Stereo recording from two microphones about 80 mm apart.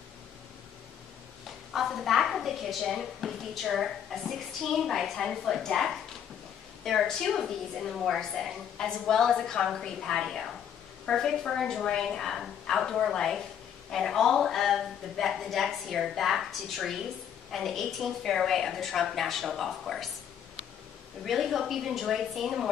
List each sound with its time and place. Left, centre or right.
1.7 s a woman's voice: centre
21.2 s a woman's voice: centre